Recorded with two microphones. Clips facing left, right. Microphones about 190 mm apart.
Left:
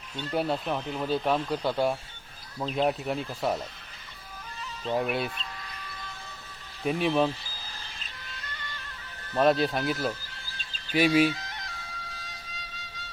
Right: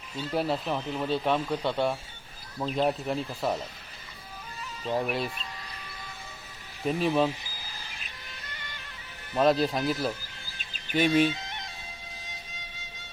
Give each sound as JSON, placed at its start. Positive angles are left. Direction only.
{"t": 0.2, "sound": "speech", "side_deg": 0}
{"t": 4.8, "sound": "speech", "side_deg": 0}
{"t": 7.1, "sound": "speech", "side_deg": -10}
{"t": 9.4, "sound": "speech", "side_deg": 0}
{"t": 10.6, "sound": "bird", "side_deg": -15}
{"t": 10.9, "sound": "speech", "side_deg": 5}
{"t": 11.3, "sound": "music", "side_deg": -20}